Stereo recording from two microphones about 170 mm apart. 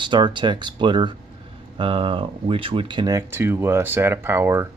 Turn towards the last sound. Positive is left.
turn(degrees=-15)  # may be behind; listen again after turning